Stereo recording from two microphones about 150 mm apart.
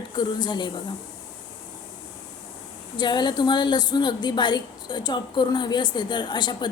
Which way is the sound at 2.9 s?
30° left (ahead or behind).